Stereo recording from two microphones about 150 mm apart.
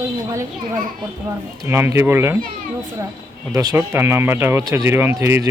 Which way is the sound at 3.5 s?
20° right (ahead or behind).